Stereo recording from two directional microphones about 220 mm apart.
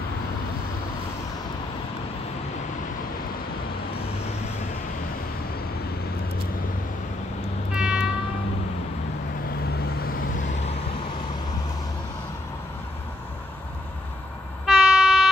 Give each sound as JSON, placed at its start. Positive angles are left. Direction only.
{"t": 7.7, "sound": "train", "side_deg": -5}
{"t": 9.7, "sound": "vehicle", "side_deg": 45}
{"t": 14.7, "sound": "train", "side_deg": -5}